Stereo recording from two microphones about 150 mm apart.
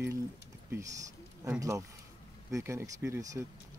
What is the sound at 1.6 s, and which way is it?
Speech, 20° right (ahead or behind).